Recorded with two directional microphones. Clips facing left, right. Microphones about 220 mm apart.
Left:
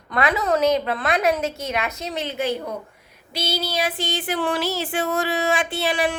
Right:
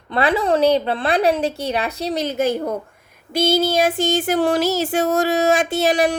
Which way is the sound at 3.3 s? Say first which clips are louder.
Right 9 dB; 50° right (ahead or behind).